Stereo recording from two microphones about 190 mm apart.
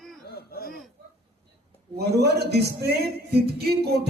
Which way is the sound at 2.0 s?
60° right (ahead or behind).